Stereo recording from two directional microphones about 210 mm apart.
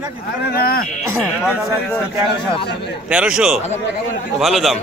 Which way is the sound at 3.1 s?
5° right (ahead or behind).